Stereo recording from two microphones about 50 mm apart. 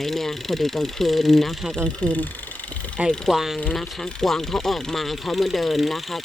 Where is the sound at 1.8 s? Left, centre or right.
Left.